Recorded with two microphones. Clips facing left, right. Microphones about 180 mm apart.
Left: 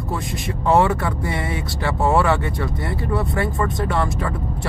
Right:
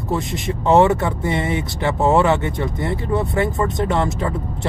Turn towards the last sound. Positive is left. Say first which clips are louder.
# right 2 dB
turn(degrees=-20)  # may be behind; listen again after turning